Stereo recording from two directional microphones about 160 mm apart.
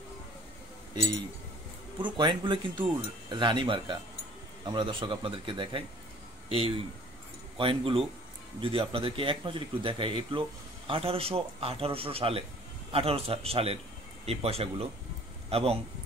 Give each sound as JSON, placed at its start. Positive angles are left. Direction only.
{"t": 2.0, "sound": "speech", "side_deg": -30}
{"t": 7.5, "sound": "speech", "side_deg": -35}